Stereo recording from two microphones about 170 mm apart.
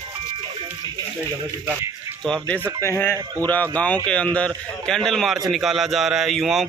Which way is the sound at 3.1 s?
20° right (ahead or behind).